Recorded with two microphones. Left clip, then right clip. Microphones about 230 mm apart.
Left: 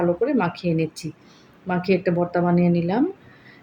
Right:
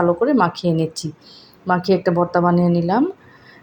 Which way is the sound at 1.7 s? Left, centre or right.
Centre.